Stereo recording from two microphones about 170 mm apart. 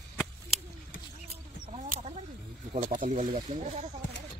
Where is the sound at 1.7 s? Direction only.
40° right (ahead or behind).